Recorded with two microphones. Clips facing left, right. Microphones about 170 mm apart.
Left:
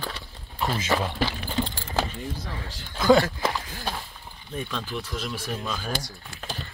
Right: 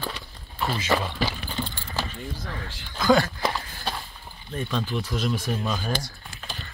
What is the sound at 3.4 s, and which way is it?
Run, centre (ahead or behind).